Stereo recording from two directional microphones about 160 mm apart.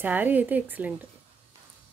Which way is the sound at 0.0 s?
10° right (ahead or behind).